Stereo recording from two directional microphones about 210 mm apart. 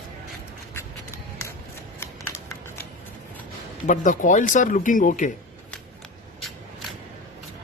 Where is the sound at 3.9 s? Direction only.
35° left (ahead or behind).